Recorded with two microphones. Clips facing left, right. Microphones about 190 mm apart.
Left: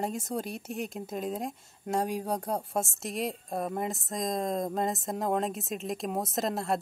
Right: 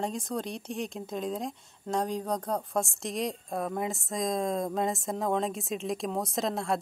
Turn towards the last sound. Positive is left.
turn(degrees=0)  # may be behind; listen again after turning